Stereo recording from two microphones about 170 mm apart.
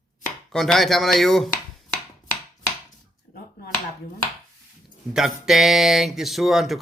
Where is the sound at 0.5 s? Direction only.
Centre (ahead or behind).